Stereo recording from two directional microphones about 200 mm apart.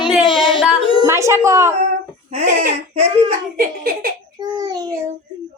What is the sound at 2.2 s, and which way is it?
Speech, 35° right (ahead or behind).